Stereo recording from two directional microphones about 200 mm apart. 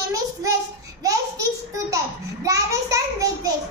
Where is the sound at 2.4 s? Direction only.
15° right (ahead or behind).